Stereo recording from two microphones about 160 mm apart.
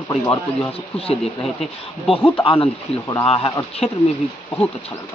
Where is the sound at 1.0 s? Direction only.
40° left (ahead or behind).